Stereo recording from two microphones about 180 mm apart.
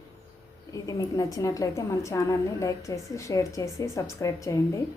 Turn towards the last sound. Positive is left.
turn(degrees=15)  # may be behind; listen again after turning